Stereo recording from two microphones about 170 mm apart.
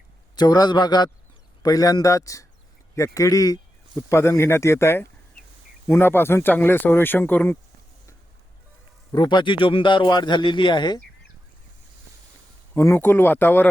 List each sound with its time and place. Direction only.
0.3 s speech: 25° left (ahead or behind)
9.1 s speech: 25° left (ahead or behind)
12.7 s speech: 15° left (ahead or behind)